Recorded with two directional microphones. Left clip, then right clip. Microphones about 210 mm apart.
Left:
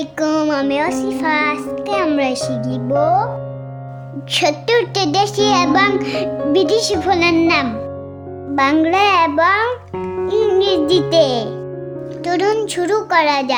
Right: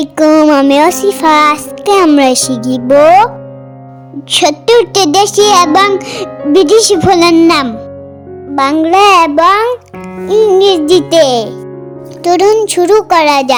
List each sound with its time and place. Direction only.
0.0 s a child's voice: 30° right (ahead or behind)
4.3 s a child's voice: 25° right (ahead or behind)
8.5 s a child's voice: 15° right (ahead or behind)